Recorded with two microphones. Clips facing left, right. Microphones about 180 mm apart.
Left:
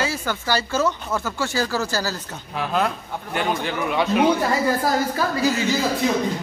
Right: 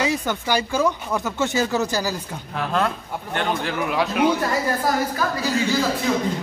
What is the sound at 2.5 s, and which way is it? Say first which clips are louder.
A man's voice: even; 5° left (ahead or behind).